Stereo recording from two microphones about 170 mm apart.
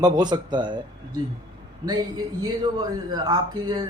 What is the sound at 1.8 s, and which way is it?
Speech, 25° right (ahead or behind).